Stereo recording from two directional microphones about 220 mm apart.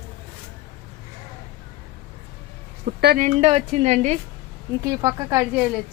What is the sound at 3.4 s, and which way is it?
Speech, 25° right (ahead or behind).